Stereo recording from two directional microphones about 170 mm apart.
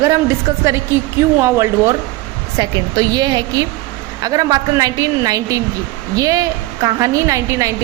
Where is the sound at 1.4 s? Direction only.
15° right (ahead or behind).